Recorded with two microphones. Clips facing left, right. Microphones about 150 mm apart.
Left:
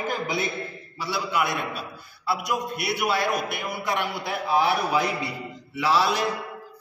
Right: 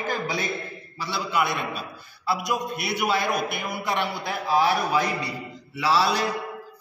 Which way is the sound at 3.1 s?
Centre (ahead or behind).